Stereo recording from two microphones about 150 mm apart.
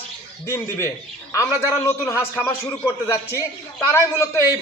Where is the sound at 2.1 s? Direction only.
15° left (ahead or behind).